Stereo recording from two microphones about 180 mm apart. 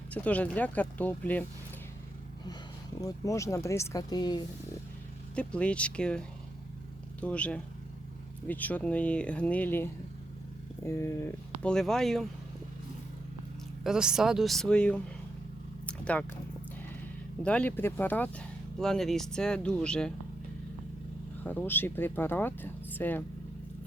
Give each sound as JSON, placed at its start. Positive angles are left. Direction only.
{"t": 0.1, "sound": "speech", "side_deg": 5}
{"t": 3.0, "sound": "speech", "side_deg": 20}
{"t": 5.3, "sound": "speech", "side_deg": 5}
{"t": 13.8, "sound": "speech", "side_deg": -5}
{"t": 15.9, "sound": "a sound", "side_deg": 5}
{"t": 17.4, "sound": "speech", "side_deg": 10}
{"t": 21.4, "sound": "speech", "side_deg": 10}